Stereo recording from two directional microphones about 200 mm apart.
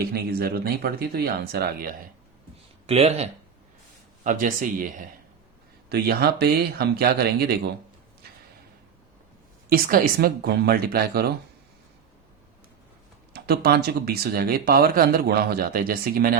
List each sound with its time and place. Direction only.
0.0 s speech: 50° right (ahead or behind)
2.8 s speech: 30° right (ahead or behind)
5.9 s speech: 55° right (ahead or behind)
9.6 s speech: 45° right (ahead or behind)
13.3 s speech: 50° right (ahead or behind)